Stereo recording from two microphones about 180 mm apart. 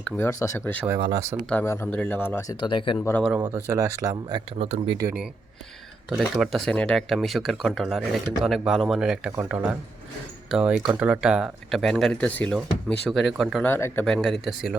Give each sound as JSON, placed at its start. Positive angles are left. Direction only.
{"t": 0.0, "sound": "speech", "side_deg": 15}
{"t": 0.9, "sound": "speech", "side_deg": -20}
{"t": 1.5, "sound": "speech", "side_deg": 10}
{"t": 2.6, "sound": "speech", "side_deg": 25}
{"t": 3.0, "sound": "speech", "side_deg": 10}
{"t": 3.2, "sound": "speech", "side_deg": -10}
{"t": 4.1, "sound": "speech", "side_deg": -25}
{"t": 5.0, "sound": "speech", "side_deg": -5}
{"t": 13.7, "sound": "speech", "side_deg": 15}
{"t": 14.0, "sound": "speech", "side_deg": 0}